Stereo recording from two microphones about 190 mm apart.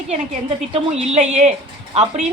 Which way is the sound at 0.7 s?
35° right (ahead or behind).